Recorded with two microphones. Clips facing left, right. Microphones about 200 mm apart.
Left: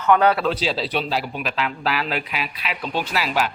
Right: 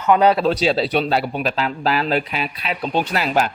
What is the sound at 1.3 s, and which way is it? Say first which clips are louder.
A man's voice: right 4 dB; 35° right (ahead or behind).